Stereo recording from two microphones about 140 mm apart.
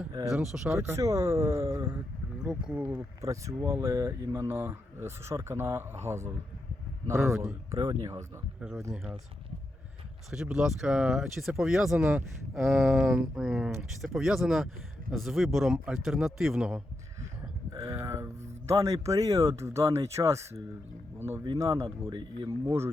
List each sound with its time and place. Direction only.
0.3 s speech: 5° right (ahead or behind)
0.7 s speech: 20° right (ahead or behind)
2.4 s speech: 5° right (ahead or behind)
3.2 s speech: 20° right (ahead or behind)
8.6 s speech: 5° right (ahead or behind)
10.3 s speech: 5° right (ahead or behind)
17.7 s a sound: 25° right (ahead or behind)
18.7 s speech: 20° right (ahead or behind)
22.1 s speech: 35° right (ahead or behind)